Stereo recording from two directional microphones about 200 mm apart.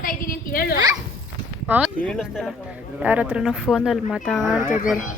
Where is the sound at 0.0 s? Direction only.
45° left (ahead or behind).